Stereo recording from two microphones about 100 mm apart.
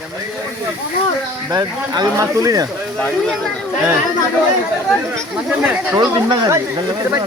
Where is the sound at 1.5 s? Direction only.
35° right (ahead or behind).